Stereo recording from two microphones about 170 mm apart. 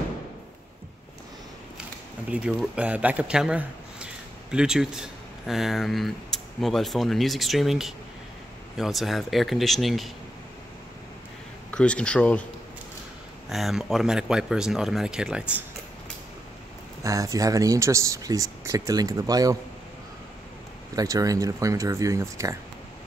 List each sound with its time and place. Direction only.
2.2 s a man's voice: 5° right (ahead or behind)
11.7 s speech: 5° left (ahead or behind)
13.5 s speech: centre (ahead or behind)
17.0 s speech: 20° right (ahead or behind)
20.9 s speech: 20° right (ahead or behind)